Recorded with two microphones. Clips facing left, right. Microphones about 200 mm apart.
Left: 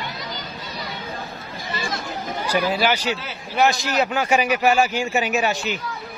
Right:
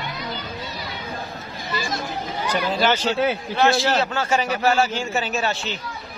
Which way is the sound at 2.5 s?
10° left (ahead or behind).